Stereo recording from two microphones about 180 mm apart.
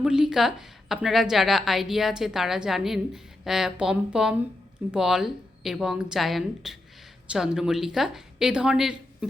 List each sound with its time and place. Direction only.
0.0 s a woman's voice: 5° right (ahead or behind)